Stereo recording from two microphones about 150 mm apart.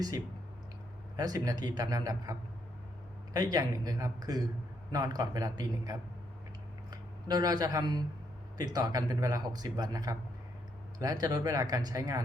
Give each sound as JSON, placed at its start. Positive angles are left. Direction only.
{"t": 1.1, "sound": "speech", "side_deg": -25}